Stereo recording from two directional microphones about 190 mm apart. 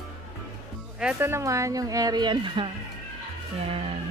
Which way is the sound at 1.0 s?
10° right (ahead or behind).